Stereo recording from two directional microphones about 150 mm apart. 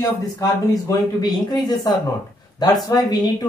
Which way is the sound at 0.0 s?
25° left (ahead or behind).